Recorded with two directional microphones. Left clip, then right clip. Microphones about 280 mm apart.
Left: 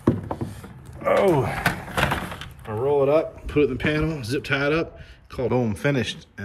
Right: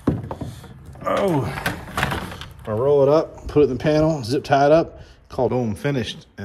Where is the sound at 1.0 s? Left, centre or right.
Centre.